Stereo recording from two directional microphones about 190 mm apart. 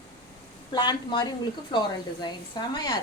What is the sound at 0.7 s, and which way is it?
A woman's voice, 25° left (ahead or behind).